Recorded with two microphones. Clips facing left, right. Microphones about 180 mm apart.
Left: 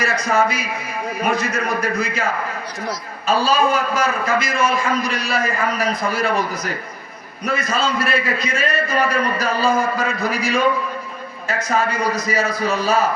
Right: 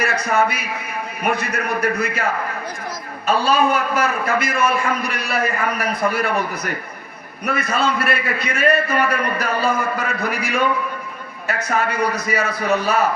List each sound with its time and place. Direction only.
0.0 s a man's voice: 60° right (ahead or behind)
3.2 s a man's voice: 60° right (ahead or behind)
7.4 s a man's voice: 60° right (ahead or behind)